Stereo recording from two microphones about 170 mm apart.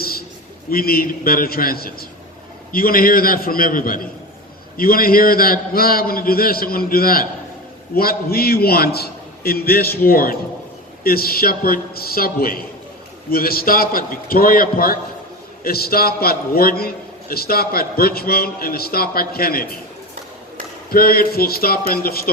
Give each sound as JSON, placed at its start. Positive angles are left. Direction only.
{"t": 0.7, "sound": "a man's voice", "side_deg": 60}
{"t": 20.9, "sound": "a man's voice", "side_deg": 60}